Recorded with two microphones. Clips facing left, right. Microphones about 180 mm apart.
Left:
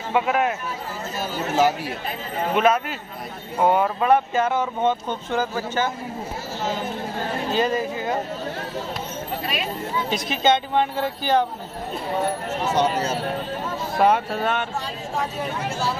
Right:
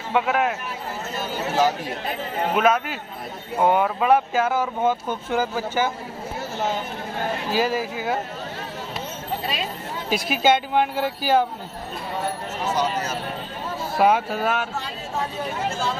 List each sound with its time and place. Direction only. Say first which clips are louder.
0.1 s speech: even; centre (ahead or behind)
2.5 s speech: left 1 dB; centre (ahead or behind)
7.5 s speech: left 1 dB; 5° right (ahead or behind)
10.0 s speech: right 2 dB; 5° right (ahead or behind)
12.7 s speech: left 4 dB; 30° left (ahead or behind)
13.9 s speech: even; 5° right (ahead or behind)